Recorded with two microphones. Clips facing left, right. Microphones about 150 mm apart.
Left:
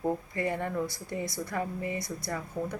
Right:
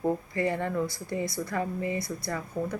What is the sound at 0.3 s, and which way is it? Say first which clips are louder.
Speech: right 3 dB; 10° left (ahead or behind).